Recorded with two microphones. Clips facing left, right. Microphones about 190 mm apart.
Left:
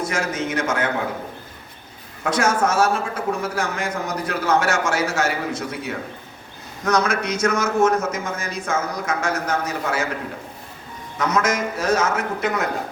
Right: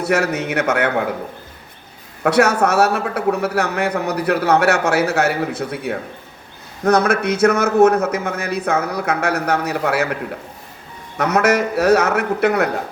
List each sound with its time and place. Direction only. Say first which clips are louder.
0.0 s a man's voice: right 6 dB; 65° right (ahead or behind)
2.2 s a man's voice: right 5 dB; 65° right (ahead or behind)
11.2 s a man's voice: right 5 dB; 65° right (ahead or behind)